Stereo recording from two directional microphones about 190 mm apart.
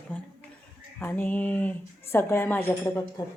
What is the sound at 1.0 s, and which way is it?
Speech, 10° left (ahead or behind).